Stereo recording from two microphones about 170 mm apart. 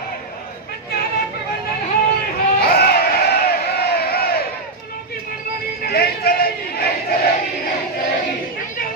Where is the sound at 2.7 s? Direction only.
70° left (ahead or behind).